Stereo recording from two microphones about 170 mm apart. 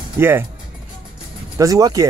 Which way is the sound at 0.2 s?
15° right (ahead or behind).